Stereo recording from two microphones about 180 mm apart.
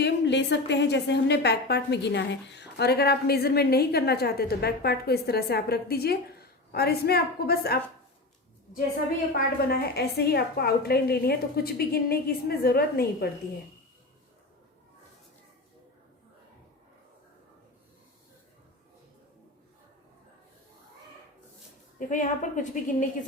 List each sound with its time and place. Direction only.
0.0 s a woman's voice: 75° left (ahead or behind)
9.3 s a woman's voice: 55° left (ahead or behind)
21.9 s a woman's voice: 45° left (ahead or behind)